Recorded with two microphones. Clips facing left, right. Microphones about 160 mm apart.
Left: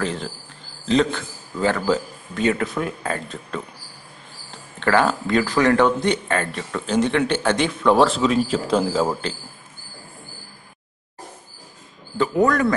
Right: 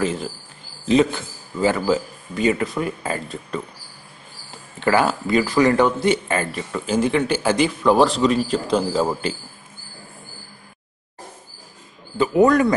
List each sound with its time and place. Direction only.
0.0 s speech: 5° right (ahead or behind)
4.7 s speech: 5° right (ahead or behind)
12.2 s a man's voice: 15° right (ahead or behind)